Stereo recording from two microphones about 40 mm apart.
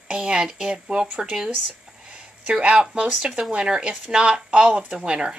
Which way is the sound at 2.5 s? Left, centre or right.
Right.